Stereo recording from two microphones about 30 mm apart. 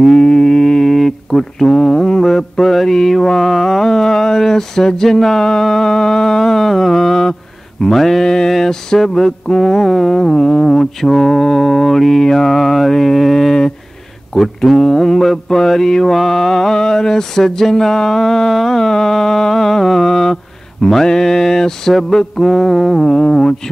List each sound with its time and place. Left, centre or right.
0.1 s music: left
0.9 s mantra: centre
10.7 s mantra: centre